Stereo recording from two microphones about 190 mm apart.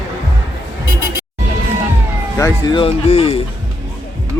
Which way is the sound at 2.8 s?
30° left (ahead or behind).